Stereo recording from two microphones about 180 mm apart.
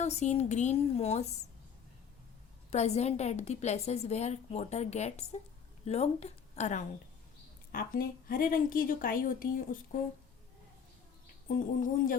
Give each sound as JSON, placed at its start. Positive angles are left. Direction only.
{"t": 0.0, "sound": "a woman's voice", "side_deg": 40}
{"t": 2.6, "sound": "a woman's voice", "side_deg": 35}
{"t": 7.7, "sound": "a woman's voice", "side_deg": 55}
{"t": 11.4, "sound": "a woman's voice", "side_deg": 50}